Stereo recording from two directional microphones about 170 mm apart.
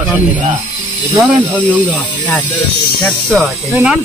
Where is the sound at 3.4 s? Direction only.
5° right (ahead or behind).